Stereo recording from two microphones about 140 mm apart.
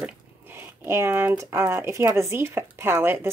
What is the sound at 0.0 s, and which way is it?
Speech, 15° right (ahead or behind).